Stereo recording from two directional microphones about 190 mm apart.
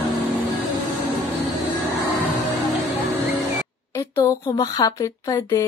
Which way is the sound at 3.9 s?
15° left (ahead or behind).